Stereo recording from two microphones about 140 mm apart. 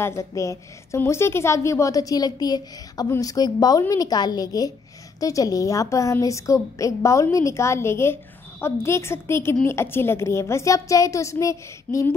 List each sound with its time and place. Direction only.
0.0 s a woman's voice: 20° left (ahead or behind)